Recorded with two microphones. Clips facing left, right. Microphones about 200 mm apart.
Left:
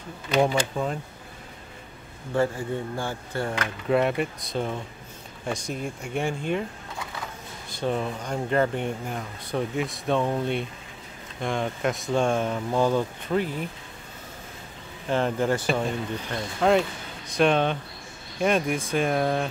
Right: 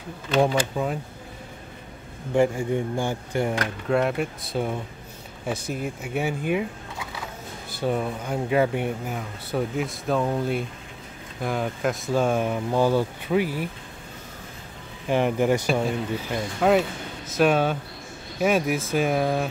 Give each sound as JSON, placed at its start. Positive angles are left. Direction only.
{"t": 0.3, "sound": "speech", "side_deg": 0}
{"t": 2.3, "sound": "speech", "side_deg": -15}
{"t": 3.9, "sound": "speech", "side_deg": 0}
{"t": 7.8, "sound": "speech", "side_deg": -5}
{"t": 15.0, "sound": "speech", "side_deg": -10}